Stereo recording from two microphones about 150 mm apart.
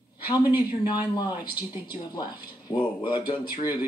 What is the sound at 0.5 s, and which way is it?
Speech, 25° left (ahead or behind).